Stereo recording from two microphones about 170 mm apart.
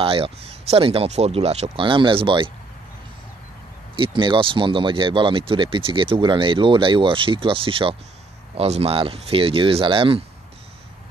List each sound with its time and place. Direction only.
0.0 s speech: 35° right (ahead or behind)
3.9 s speech: 30° right (ahead or behind)